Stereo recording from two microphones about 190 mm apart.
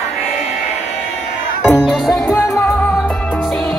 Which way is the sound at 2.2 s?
15° left (ahead or behind).